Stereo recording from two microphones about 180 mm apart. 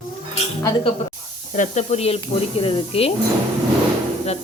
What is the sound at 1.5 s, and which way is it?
Speech, 40° left (ahead or behind).